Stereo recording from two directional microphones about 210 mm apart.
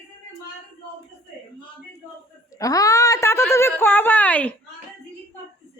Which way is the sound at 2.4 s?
15° left (ahead or behind).